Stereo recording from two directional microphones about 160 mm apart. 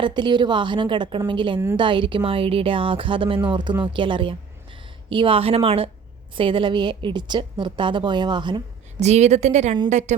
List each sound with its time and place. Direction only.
0.0 s a woman's voice: 30° right (ahead or behind)
9.0 s a woman's voice: 45° right (ahead or behind)